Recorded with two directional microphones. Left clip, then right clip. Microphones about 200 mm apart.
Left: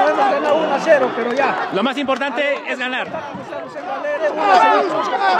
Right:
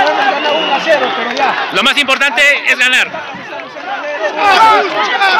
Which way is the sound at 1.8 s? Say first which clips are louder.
Right 8 dB; 20° left (ahead or behind).